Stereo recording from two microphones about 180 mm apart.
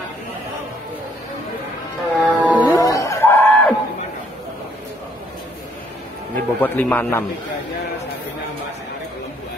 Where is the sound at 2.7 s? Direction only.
20° left (ahead or behind).